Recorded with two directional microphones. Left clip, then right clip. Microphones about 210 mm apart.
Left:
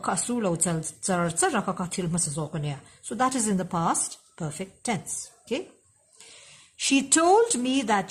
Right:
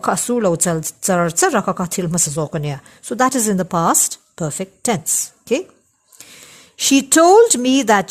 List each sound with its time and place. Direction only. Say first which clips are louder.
0.0 s a woman's voice: right 10 dB; 40° right (ahead or behind)
6.7 s a woman's voice: right 10 dB; 40° right (ahead or behind)